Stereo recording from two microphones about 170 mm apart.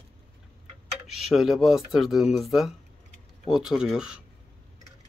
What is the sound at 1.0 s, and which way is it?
Speech, centre (ahead or behind).